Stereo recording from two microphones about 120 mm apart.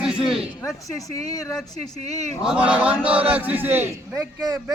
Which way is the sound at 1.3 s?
30° left (ahead or behind).